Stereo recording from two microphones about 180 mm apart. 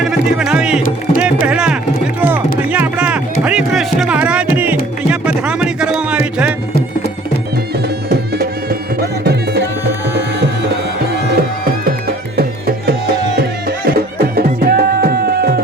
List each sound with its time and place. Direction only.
0.0 s music: 5° right (ahead or behind)
0.8 s music: 50° left (ahead or behind)
1.5 s music: 5° right (ahead or behind)
8.1 s music: 60° right (ahead or behind)
11.3 s music: 55° right (ahead or behind)